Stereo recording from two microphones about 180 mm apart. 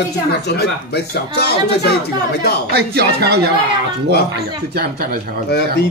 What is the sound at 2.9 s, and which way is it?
Speech, 60° right (ahead or behind).